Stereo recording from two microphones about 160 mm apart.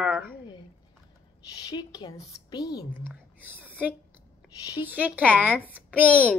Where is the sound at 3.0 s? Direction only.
10° right (ahead or behind).